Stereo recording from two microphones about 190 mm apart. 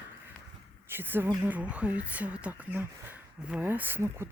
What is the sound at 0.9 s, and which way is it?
Speech, 10° right (ahead or behind).